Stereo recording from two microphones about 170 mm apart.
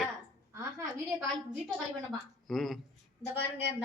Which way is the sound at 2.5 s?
Centre (ahead or behind).